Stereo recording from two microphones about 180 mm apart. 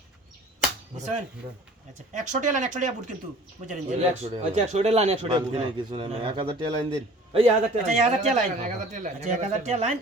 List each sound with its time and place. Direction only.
0.9 s cap gun: 40° right (ahead or behind)
2.1 s speech: 45° right (ahead or behind)
8.0 s speech: 40° right (ahead or behind)